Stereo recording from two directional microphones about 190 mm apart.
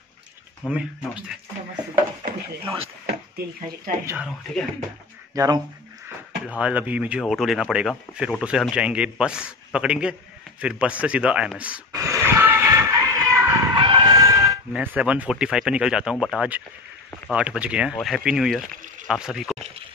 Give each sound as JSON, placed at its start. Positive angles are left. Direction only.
{"t": 0.6, "sound": "a man's voice", "side_deg": -5}
{"t": 4.0, "sound": "speech", "side_deg": -15}
{"t": 5.3, "sound": "speech", "side_deg": -15}
{"t": 6.4, "sound": "a man's voice", "side_deg": -5}
{"t": 11.9, "sound": "a sound", "side_deg": -15}
{"t": 14.7, "sound": "a man's voice", "side_deg": -10}